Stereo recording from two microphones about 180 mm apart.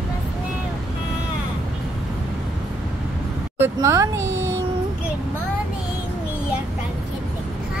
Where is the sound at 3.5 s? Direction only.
15° right (ahead or behind).